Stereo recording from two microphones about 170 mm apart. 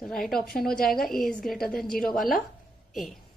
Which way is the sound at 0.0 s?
5° left (ahead or behind).